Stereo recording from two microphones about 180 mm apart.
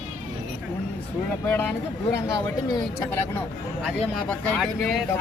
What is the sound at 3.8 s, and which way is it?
Speech, centre (ahead or behind).